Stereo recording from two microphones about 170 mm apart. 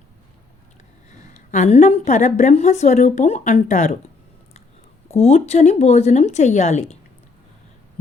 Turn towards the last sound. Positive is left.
turn(degrees=40)  # may be behind; listen again after turning